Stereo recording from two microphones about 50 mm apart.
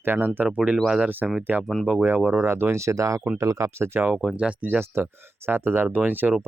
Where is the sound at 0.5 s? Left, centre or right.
Right.